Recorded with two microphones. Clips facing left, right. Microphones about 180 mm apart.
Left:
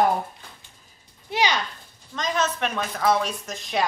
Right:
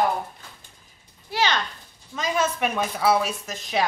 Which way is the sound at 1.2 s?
15° left (ahead or behind).